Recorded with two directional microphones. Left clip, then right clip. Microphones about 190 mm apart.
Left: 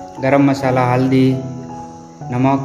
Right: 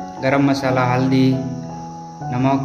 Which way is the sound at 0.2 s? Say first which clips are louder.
Left 3 dB; 20° left (ahead or behind).